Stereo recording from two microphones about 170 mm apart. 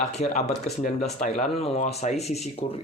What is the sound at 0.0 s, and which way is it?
Speech, 40° left (ahead or behind).